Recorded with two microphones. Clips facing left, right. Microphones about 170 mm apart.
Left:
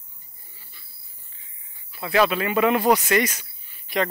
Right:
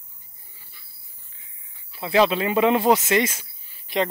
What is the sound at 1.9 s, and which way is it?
Speech, 20° right (ahead or behind).